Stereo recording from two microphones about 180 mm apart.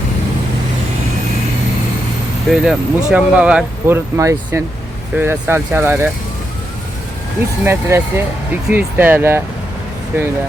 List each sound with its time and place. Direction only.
2.5 s speech: 5° right (ahead or behind)
7.6 s speech: 15° right (ahead or behind)